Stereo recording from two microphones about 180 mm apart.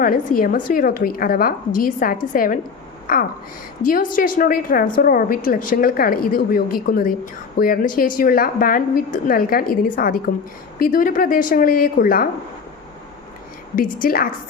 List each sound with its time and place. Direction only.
0.0 s a woman's voice: 50° left (ahead or behind)
13.7 s a woman's voice: 50° left (ahead or behind)